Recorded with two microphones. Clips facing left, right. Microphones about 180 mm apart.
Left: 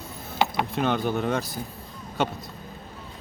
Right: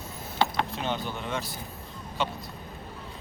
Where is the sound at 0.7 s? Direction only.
55° left (ahead or behind).